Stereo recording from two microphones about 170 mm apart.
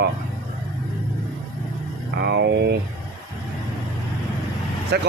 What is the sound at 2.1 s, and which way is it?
Speech, 75° right (ahead or behind).